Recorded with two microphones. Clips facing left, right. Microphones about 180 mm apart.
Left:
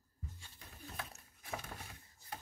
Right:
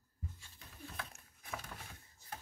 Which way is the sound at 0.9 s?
40° left (ahead or behind).